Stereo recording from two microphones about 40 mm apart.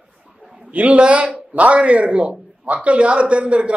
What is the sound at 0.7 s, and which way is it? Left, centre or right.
A man's voice, right.